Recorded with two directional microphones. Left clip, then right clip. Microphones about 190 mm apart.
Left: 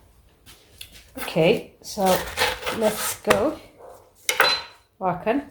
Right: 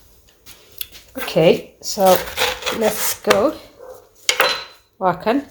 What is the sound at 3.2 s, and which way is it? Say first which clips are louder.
Speech: right 4 dB; 35° right (ahead or behind).